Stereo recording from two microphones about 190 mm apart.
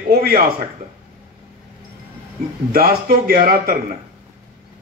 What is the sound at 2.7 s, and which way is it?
A man's voice, 50° right (ahead or behind).